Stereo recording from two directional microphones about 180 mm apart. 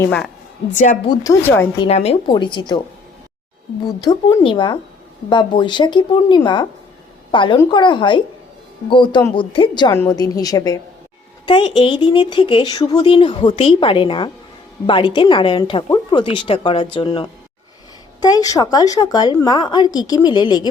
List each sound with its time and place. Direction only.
0.0 s speech: 5° left (ahead or behind)
0.7 s a woman's voice: 45° left (ahead or behind)
1.0 s speech: 20° left (ahead or behind)
1.8 s a woman's voice: 35° left (ahead or behind)
4.0 s a woman's voice: 25° left (ahead or behind)